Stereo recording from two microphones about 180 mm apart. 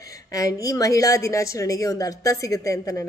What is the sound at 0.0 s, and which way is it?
Speech, 20° left (ahead or behind).